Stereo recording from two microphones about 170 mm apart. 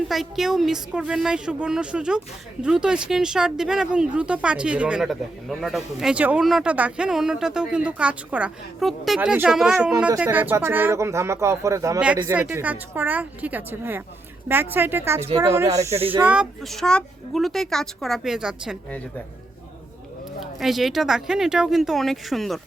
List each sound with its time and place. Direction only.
0.1 s a woman's voice: centre (ahead or behind); by 11.9 s 20° right (ahead or behind)
11.9 s a woman's voice: 5° right (ahead or behind)
20.4 s a woman's voice: centre (ahead or behind)